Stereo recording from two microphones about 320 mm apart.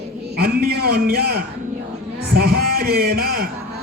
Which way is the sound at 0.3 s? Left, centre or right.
Right.